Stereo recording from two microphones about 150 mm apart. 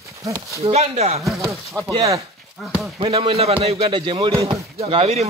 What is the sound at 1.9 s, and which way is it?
Speech, 20° right (ahead or behind).